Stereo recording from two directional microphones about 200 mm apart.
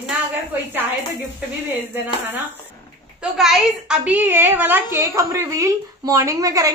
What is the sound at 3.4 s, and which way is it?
A woman's voice, centre (ahead or behind).